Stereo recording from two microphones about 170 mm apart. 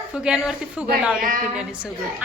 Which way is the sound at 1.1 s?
55° right (ahead or behind).